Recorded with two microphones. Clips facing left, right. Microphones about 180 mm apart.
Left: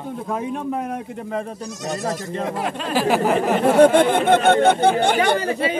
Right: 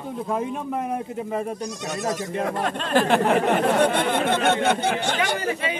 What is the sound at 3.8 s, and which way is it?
Speech, 50° left (ahead or behind).